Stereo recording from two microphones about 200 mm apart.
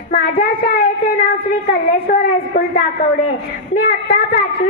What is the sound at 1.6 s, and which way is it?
A woman's voice, 45° left (ahead or behind).